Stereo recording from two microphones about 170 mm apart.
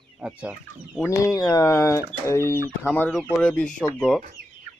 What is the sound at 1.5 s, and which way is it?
Speech, 20° left (ahead or behind).